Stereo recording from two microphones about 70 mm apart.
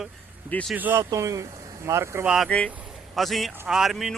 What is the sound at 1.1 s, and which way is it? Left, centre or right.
Speech, right.